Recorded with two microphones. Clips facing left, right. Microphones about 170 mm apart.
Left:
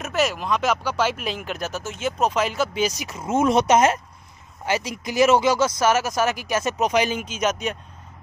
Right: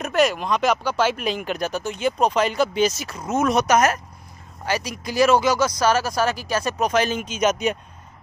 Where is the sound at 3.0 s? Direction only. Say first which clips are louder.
Left 1 dB; 25° left (ahead or behind).